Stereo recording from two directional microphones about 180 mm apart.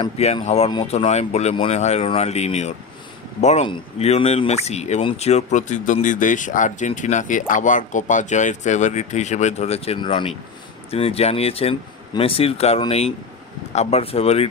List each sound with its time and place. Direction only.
0.0 s speech: 35° left (ahead or behind)